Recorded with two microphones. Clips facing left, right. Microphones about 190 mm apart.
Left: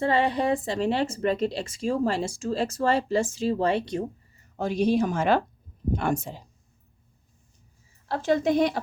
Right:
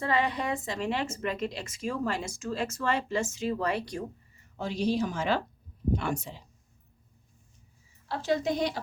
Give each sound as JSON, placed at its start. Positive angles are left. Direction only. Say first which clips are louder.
{"t": 0.0, "sound": "speech", "louder": "left 5 dB", "side_deg": 30}
{"t": 4.5, "sound": "speech", "louder": "left 5 dB", "side_deg": 50}
{"t": 8.0, "sound": "speech", "louder": "left 5 dB", "side_deg": 50}